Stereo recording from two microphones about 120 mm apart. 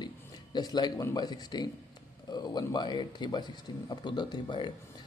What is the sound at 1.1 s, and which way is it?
A man's voice, 35° left (ahead or behind).